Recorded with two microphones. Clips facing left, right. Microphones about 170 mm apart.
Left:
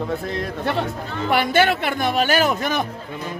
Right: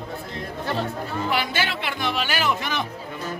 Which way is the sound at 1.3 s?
55° left (ahead or behind).